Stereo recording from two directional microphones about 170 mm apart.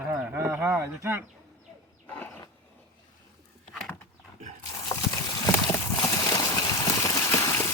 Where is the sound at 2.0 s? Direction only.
10° left (ahead or behind).